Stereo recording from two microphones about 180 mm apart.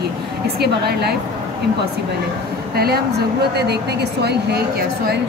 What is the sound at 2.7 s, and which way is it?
Speech, 60° right (ahead or behind).